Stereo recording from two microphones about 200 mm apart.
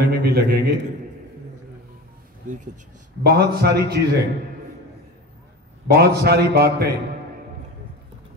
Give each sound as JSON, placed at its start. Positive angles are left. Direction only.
{"t": 0.0, "sound": "a man's voice", "side_deg": -55}
{"t": 2.4, "sound": "speech", "side_deg": -40}
{"t": 3.3, "sound": "a man's voice", "side_deg": -50}
{"t": 5.9, "sound": "a man's voice", "side_deg": -50}